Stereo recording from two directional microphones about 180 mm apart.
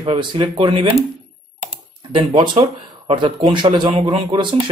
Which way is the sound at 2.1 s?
30° right (ahead or behind).